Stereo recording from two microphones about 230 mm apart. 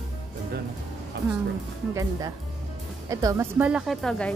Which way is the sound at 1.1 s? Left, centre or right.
Right.